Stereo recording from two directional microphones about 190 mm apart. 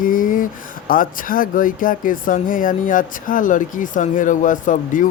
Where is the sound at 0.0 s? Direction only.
45° left (ahead or behind).